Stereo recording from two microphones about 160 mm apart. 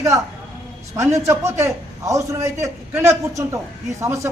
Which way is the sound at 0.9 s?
15° right (ahead or behind).